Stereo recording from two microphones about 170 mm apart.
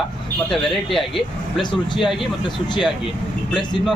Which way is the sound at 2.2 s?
30° left (ahead or behind).